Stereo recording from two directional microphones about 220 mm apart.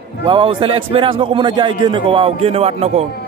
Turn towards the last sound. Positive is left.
turn(degrees=-25)  # may be behind; listen again after turning